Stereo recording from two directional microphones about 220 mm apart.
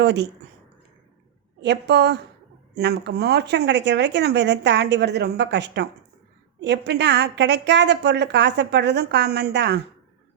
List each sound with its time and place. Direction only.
0.0 s speech: 50° right (ahead or behind)
1.6 s a woman's voice: 50° right (ahead or behind)